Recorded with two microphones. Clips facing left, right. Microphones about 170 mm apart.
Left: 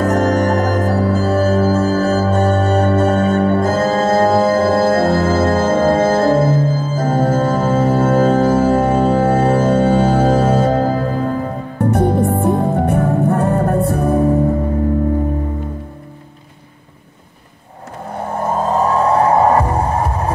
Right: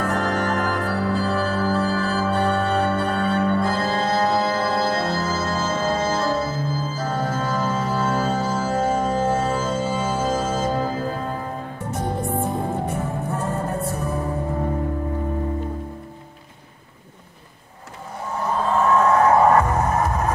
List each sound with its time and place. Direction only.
0.0 s music: 45° left (ahead or behind); by 14.2 s 60° left (ahead or behind)
18.1 s music: 55° left (ahead or behind); by 20.3 s 30° left (ahead or behind)